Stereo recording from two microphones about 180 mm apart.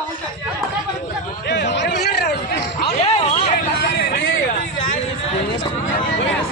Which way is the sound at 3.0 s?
35° left (ahead or behind).